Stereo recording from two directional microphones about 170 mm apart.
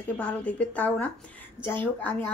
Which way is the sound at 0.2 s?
10° left (ahead or behind).